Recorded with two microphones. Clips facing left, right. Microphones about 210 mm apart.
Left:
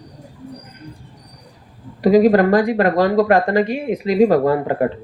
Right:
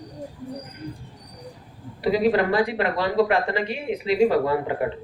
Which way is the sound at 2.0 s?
45° left (ahead or behind).